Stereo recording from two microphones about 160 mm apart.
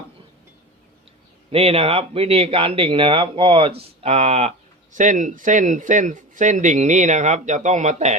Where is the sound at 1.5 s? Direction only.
40° right (ahead or behind).